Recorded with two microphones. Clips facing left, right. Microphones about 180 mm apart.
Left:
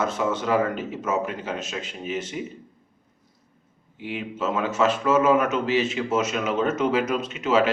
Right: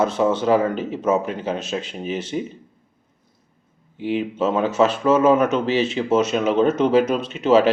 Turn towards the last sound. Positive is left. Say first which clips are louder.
# right 5 dB
turn(degrees=-35)  # may be behind; listen again after turning